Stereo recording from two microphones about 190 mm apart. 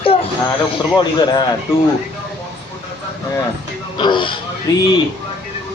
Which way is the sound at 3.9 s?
25° left (ahead or behind).